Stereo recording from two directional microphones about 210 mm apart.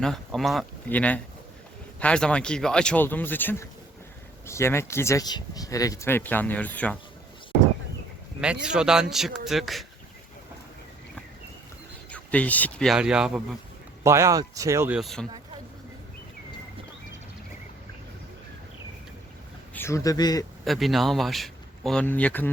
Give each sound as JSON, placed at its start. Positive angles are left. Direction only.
{"t": 0.0, "sound": "a man's voice", "side_deg": 0}
{"t": 8.6, "sound": "a man's voice", "side_deg": -5}
{"t": 12.1, "sound": "a man's voice", "side_deg": 5}
{"t": 19.7, "sound": "a man's voice", "side_deg": 10}
{"t": 20.7, "sound": "a man's voice", "side_deg": 0}